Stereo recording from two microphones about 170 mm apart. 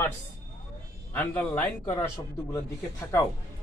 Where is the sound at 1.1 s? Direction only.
10° left (ahead or behind).